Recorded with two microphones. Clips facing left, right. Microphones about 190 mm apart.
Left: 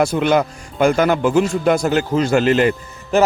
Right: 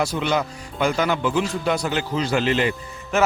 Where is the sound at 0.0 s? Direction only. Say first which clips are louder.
Left 7 dB; 50° left (ahead or behind).